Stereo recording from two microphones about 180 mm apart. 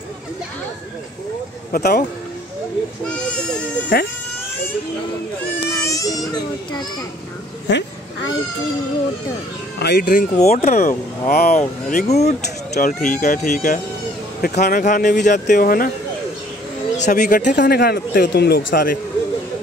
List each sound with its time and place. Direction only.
1.7 s speech: 60° left (ahead or behind)
5.7 s speech: 15° left (ahead or behind)
7.6 s speech: 75° left (ahead or behind)
9.8 s speech: 65° left (ahead or behind); by 10.7 s 40° left (ahead or behind)
10.7 s speech: 50° left (ahead or behind)
17.0 s speech: 45° left (ahead or behind)
17.6 s speech: 60° left (ahead or behind)